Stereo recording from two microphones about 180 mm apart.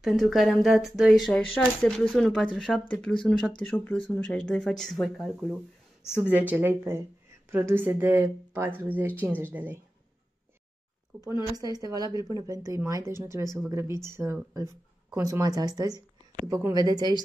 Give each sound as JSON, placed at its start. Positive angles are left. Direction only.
{"t": 0.0, "sound": "speech", "side_deg": 0}
{"t": 11.2, "sound": "speech", "side_deg": -15}